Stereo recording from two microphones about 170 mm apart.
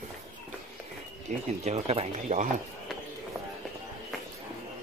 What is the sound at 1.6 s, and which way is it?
Speech, 40° right (ahead or behind).